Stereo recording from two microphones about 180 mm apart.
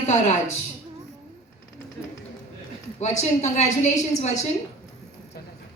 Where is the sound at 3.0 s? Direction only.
40° left (ahead or behind).